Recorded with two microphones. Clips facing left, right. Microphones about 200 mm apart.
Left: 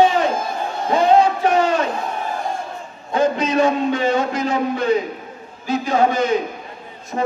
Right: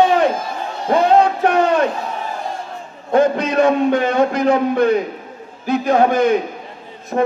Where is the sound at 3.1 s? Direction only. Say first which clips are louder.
Right 3 dB; 60° right (ahead or behind).